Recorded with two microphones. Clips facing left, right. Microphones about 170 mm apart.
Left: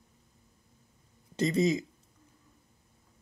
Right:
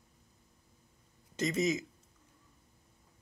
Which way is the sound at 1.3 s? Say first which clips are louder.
Left 4 dB; 30° left (ahead or behind).